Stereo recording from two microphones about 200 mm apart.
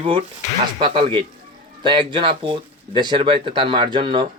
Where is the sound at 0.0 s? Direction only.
30° right (ahead or behind).